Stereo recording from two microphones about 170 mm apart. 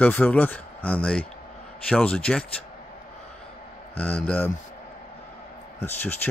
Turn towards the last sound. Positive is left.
turn(degrees=10)  # may be behind; listen again after turning